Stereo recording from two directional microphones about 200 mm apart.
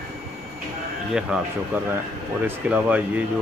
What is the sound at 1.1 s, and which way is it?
Speech, 5° right (ahead or behind).